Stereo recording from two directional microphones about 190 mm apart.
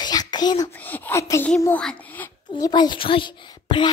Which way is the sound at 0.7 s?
10° left (ahead or behind).